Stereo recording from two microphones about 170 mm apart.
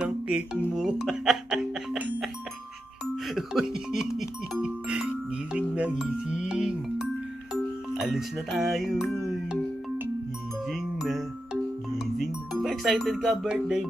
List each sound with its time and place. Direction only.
0.0 s speech: 5° right (ahead or behind)
3.3 s speech: centre (ahead or behind)
4.2 s music: 5° right (ahead or behind)
7.9 s speech: centre (ahead or behind)
10.7 s music: centre (ahead or behind)